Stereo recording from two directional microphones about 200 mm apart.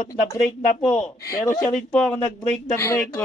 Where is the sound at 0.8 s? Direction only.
5° left (ahead or behind).